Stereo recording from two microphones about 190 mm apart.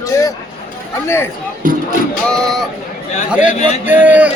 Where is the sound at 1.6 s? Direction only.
45° right (ahead or behind).